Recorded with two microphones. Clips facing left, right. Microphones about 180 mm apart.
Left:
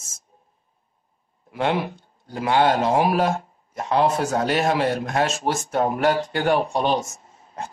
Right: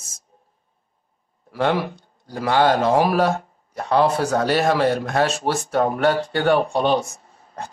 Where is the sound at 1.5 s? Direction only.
55° right (ahead or behind).